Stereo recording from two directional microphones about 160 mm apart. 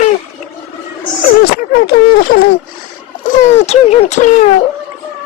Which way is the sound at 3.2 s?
50° left (ahead or behind).